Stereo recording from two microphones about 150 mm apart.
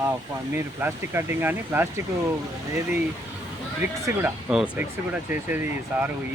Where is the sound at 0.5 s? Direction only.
15° right (ahead or behind).